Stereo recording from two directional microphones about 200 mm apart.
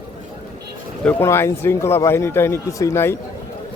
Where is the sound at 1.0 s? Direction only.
10° left (ahead or behind).